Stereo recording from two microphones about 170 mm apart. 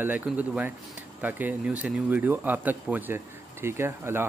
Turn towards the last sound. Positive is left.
turn(degrees=-15)  # may be behind; listen again after turning